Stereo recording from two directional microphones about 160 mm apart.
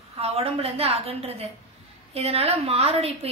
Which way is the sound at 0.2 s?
40° right (ahead or behind).